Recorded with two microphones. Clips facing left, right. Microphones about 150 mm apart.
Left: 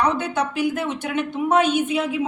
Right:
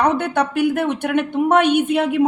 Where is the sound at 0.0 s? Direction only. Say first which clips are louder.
Right 4 dB; 60° right (ahead or behind).